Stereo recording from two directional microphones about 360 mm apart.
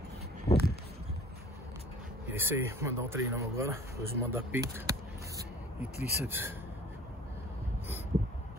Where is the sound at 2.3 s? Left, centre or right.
Centre.